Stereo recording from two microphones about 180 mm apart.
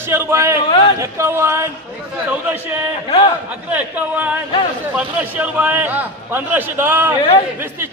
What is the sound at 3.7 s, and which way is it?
A man's voice, 10° right (ahead or behind).